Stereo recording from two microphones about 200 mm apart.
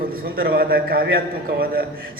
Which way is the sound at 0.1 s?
50° right (ahead or behind).